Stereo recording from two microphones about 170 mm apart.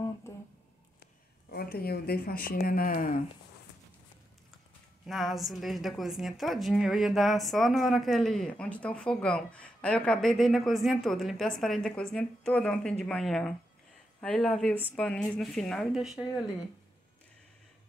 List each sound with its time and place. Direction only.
1.5 s speech: 65° left (ahead or behind)
5.0 s a woman's voice: centre (ahead or behind)